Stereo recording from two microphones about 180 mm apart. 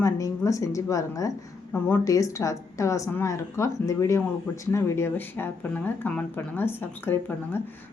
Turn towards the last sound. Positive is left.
turn(degrees=10)  # may be behind; listen again after turning